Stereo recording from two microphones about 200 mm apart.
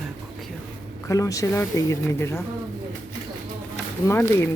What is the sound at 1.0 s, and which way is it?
Speech, 15° left (ahead or behind).